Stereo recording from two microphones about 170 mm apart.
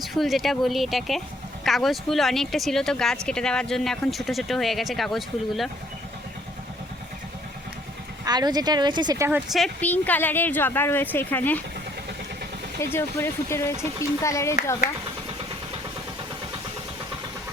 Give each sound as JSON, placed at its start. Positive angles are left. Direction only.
{"t": 0.0, "sound": "speech", "side_deg": 0}
{"t": 8.2, "sound": "speech", "side_deg": -25}
{"t": 9.5, "sound": "speech", "side_deg": 5}
{"t": 12.8, "sound": "speech", "side_deg": 15}